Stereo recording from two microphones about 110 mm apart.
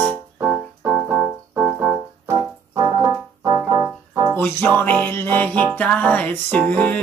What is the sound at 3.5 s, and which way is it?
Music, 40° right (ahead or behind).